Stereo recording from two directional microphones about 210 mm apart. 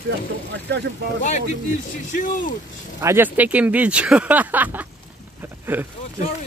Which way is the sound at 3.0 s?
10° right (ahead or behind).